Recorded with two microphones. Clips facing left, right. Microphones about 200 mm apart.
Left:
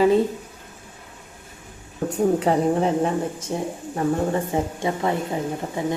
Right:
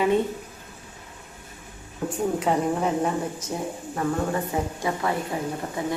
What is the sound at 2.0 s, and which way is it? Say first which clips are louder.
Speech: left 4 dB; 40° left (ahead or behind).